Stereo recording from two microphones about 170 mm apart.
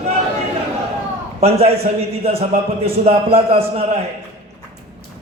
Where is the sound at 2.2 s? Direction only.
35° right (ahead or behind).